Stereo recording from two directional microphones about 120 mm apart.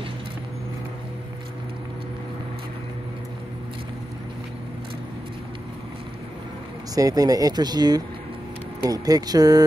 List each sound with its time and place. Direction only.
7.0 s speech: 30° right (ahead or behind)